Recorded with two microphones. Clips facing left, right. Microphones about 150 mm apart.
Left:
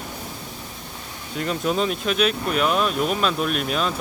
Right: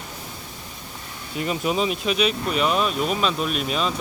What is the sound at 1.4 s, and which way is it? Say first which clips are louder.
Speech: even; 5° right (ahead or behind).